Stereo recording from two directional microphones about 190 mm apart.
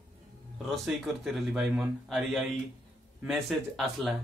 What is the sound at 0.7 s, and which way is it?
A man's voice, centre (ahead or behind).